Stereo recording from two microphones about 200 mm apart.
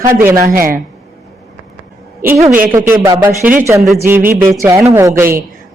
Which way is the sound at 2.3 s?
15° right (ahead or behind).